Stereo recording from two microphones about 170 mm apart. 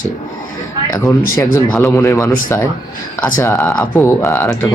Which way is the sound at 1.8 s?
15° left (ahead or behind).